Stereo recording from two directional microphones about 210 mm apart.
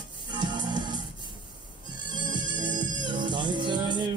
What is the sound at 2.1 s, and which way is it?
Music, 20° right (ahead or behind).